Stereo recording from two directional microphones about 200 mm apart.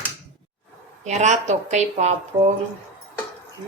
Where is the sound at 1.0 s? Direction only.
35° right (ahead or behind).